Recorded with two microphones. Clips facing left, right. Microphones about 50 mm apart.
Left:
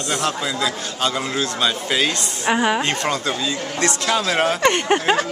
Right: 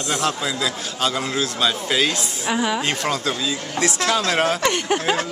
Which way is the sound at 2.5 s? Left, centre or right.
Left.